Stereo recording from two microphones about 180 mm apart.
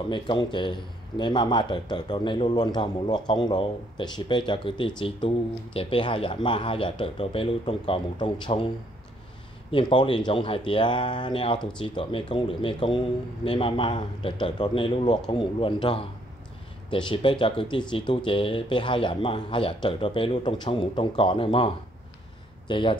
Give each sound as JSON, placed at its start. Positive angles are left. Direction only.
{"t": 0.1, "sound": "speech", "side_deg": 25}
{"t": 9.7, "sound": "speech", "side_deg": 30}